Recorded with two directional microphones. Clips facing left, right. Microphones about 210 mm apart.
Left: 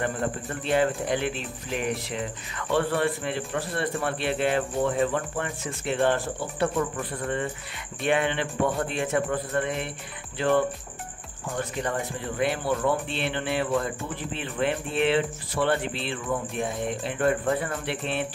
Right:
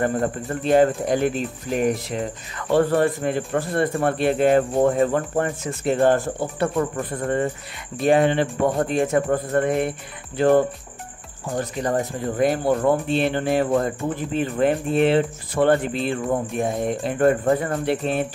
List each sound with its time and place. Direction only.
0.0 s speech: 40° right (ahead or behind)